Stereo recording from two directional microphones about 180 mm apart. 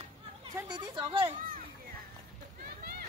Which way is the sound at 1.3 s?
50° right (ahead or behind).